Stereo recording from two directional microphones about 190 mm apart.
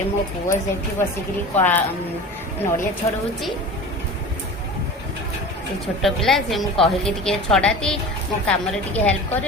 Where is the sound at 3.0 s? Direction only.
20° left (ahead or behind).